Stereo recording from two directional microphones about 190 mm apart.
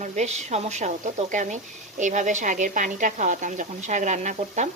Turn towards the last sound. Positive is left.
turn(degrees=-40)  # may be behind; listen again after turning